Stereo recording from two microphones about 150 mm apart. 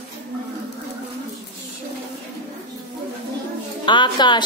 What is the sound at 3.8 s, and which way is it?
Speech, 30° left (ahead or behind).